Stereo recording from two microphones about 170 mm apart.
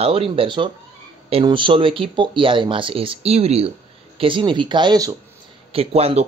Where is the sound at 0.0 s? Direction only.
35° right (ahead or behind).